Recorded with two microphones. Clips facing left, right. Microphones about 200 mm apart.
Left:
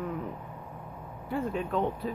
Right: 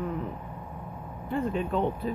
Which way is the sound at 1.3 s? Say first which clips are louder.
Right 2 dB; centre (ahead or behind).